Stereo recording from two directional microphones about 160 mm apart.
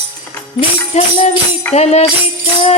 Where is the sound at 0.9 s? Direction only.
45° left (ahead or behind).